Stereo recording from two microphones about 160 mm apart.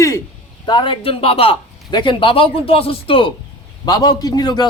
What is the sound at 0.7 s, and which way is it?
A man's voice, 30° left (ahead or behind).